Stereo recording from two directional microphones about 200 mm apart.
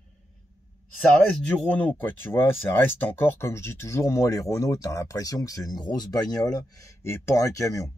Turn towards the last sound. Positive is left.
turn(degrees=15)  # may be behind; listen again after turning